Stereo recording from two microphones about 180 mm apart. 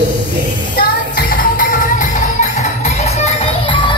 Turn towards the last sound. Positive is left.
turn(degrees=30)  # may be behind; listen again after turning